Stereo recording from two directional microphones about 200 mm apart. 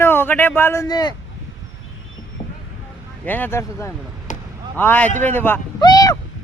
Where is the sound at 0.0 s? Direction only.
10° left (ahead or behind).